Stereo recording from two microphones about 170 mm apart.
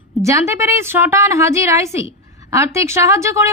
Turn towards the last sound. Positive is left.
turn(degrees=-15)  # may be behind; listen again after turning